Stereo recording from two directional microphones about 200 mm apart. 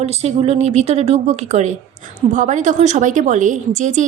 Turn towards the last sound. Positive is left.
turn(degrees=-35)  # may be behind; listen again after turning